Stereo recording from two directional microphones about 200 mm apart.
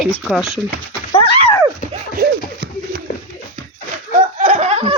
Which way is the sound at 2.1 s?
50° right (ahead or behind).